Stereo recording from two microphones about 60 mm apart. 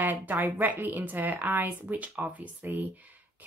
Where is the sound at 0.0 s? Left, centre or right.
Right.